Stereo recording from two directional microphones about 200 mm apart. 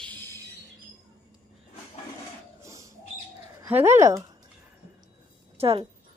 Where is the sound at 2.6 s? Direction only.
15° right (ahead or behind).